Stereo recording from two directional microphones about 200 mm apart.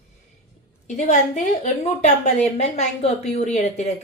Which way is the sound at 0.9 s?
35° left (ahead or behind).